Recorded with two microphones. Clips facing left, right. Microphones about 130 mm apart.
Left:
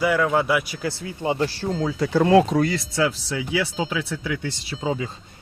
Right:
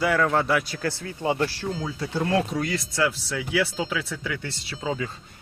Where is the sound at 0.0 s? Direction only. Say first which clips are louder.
Left 2 dB; 5° left (ahead or behind); by 1.5 s 20° left (ahead or behind).